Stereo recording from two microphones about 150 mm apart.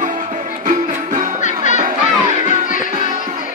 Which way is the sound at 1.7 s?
50° right (ahead or behind).